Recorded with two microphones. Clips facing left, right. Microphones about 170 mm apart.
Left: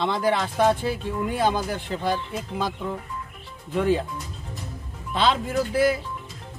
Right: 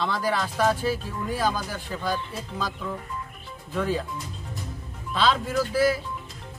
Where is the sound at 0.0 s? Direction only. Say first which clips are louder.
Left 3 dB; 20° left (ahead or behind).